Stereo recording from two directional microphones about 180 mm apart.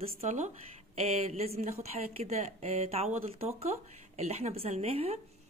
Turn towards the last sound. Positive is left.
turn(degrees=-35)  # may be behind; listen again after turning